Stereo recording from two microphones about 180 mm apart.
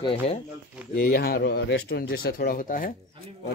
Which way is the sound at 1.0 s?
60° left (ahead or behind).